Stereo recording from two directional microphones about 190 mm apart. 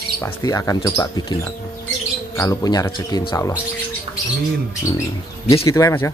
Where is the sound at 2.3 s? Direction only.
15° left (ahead or behind).